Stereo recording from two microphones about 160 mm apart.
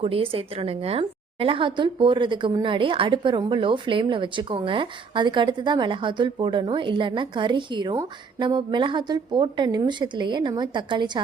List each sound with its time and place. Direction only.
0.0 s a woman's voice: 35° right (ahead or behind)